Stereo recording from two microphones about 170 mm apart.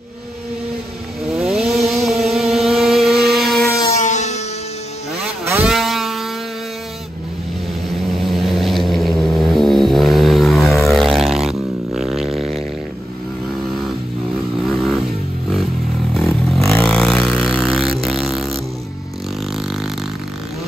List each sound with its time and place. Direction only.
1.3 s vehicle: 5° right (ahead or behind)
2.0 s motorboat: centre (ahead or behind)
3.8 s music: 40° left (ahead or behind)
5.4 s vehicle: 15° right (ahead or behind)
5.7 s vehicle: centre (ahead or behind)
8.2 s vehicle: centre (ahead or behind)
14.7 s vehicle: centre (ahead or behind)
16.1 s vehicle: 5° left (ahead or behind)
18.0 s music: centre (ahead or behind)